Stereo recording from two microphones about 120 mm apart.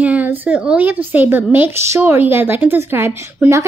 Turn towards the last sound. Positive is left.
turn(degrees=-20)  # may be behind; listen again after turning